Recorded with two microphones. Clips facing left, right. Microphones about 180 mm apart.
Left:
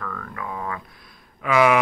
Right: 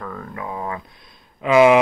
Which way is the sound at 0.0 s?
25° right (ahead or behind).